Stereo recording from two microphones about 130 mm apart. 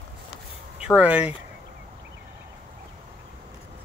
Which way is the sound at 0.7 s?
10° right (ahead or behind).